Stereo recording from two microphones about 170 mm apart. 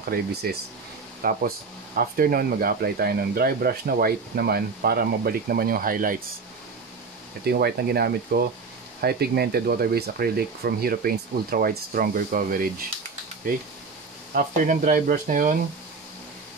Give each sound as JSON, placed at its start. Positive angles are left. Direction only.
{"t": 0.1, "sound": "speech", "side_deg": -70}
{"t": 1.2, "sound": "speech", "side_deg": -55}
{"t": 7.4, "sound": "speech", "side_deg": -65}